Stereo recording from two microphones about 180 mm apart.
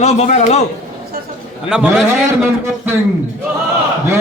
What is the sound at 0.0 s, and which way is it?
Speech, 40° left (ahead or behind).